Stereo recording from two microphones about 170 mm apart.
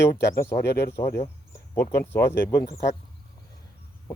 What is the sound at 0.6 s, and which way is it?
Speech, 75° left (ahead or behind).